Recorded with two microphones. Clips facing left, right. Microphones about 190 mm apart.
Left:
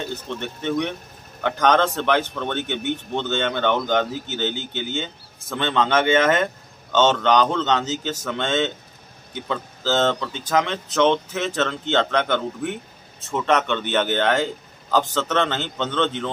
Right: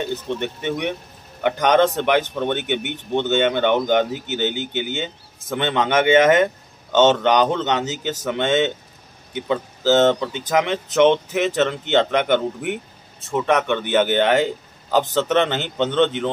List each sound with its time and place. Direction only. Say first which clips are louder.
0.1 s a man's voice: right 5 dB; 15° right (ahead or behind)